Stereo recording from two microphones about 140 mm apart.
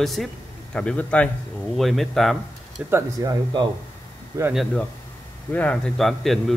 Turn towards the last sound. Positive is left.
turn(degrees=0)  # may be behind; listen again after turning